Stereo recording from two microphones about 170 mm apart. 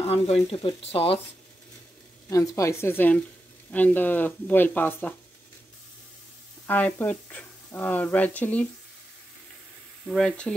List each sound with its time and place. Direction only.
0.0 s speech: 35° left (ahead or behind)
2.2 s speech: 20° left (ahead or behind)
6.7 s speech: 10° left (ahead or behind)
10.0 s speech: 5° left (ahead or behind)